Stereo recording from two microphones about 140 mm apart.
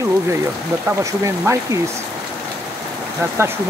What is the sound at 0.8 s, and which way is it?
Speech, 15° right (ahead or behind).